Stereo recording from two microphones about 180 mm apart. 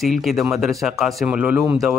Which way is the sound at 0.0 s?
Centre (ahead or behind).